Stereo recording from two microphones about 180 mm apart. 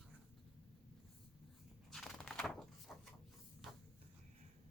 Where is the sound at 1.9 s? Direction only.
Centre (ahead or behind).